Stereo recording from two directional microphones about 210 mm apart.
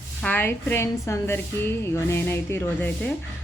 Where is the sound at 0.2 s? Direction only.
10° left (ahead or behind).